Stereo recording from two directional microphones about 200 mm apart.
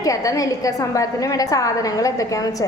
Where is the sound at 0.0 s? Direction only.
15° left (ahead or behind).